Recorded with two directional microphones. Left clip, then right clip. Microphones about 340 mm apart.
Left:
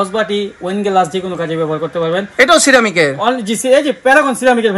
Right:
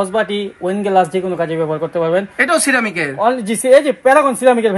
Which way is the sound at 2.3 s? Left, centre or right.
Centre.